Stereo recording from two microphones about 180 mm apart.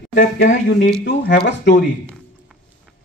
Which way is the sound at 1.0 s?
70° left (ahead or behind).